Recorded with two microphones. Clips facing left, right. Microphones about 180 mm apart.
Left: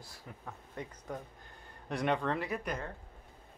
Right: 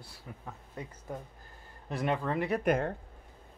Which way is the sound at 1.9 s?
5° right (ahead or behind).